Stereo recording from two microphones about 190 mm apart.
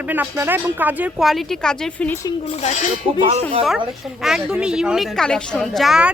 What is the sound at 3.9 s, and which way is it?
A woman's voice, centre (ahead or behind).